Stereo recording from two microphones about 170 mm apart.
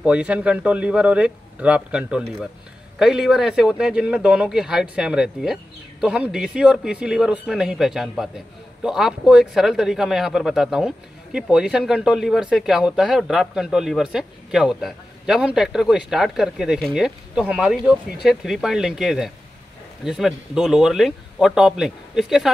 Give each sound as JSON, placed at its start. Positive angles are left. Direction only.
{"t": 0.0, "sound": "a man's voice", "side_deg": -5}